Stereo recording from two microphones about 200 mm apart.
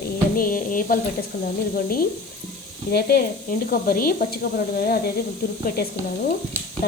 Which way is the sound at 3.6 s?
45° left (ahead or behind).